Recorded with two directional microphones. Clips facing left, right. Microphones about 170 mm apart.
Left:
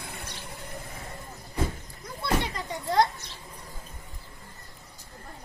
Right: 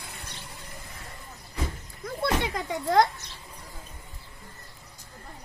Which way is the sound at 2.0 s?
50° right (ahead or behind).